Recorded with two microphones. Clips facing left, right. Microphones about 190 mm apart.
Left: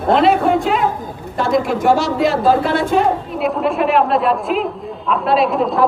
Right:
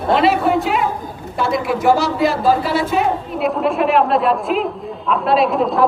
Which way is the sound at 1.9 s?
Centre (ahead or behind).